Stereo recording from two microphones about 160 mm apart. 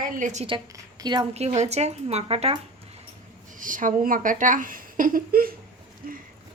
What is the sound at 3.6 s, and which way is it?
Speech, 55° right (ahead or behind).